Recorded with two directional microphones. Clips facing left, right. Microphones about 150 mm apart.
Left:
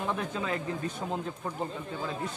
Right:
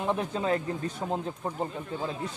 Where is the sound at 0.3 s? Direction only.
35° right (ahead or behind).